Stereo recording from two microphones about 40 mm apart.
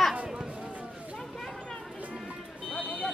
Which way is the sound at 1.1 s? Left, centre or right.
Centre.